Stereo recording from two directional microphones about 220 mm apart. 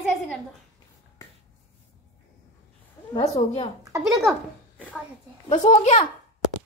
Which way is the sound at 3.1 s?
30° left (ahead or behind).